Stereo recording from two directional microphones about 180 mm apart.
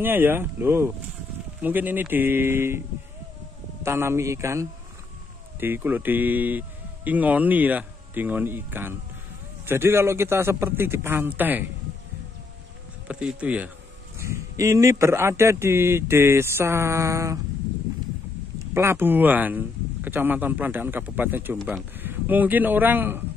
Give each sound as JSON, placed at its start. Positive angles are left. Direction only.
{"t": 0.0, "sound": "speech", "side_deg": -10}
{"t": 3.8, "sound": "speech", "side_deg": -15}
{"t": 13.1, "sound": "speech", "side_deg": -5}
{"t": 18.7, "sound": "a man's voice", "side_deg": -15}